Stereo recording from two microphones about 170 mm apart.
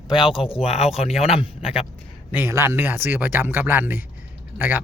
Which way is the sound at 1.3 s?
35° left (ahead or behind).